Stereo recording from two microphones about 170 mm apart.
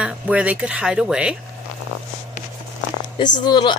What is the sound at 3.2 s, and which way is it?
Speech, 25° left (ahead or behind).